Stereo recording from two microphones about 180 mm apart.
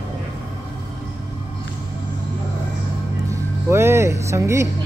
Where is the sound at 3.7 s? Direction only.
15° right (ahead or behind).